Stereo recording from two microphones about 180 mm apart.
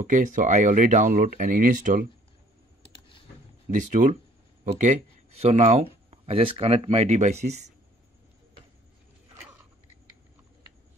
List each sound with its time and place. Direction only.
0.0 s speech: 45° right (ahead or behind)
2.9 s computer keyboard: 30° left (ahead or behind)
3.7 s speech: 40° right (ahead or behind)